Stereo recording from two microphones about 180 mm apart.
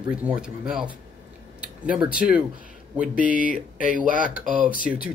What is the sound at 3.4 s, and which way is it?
Speech, 45° right (ahead or behind).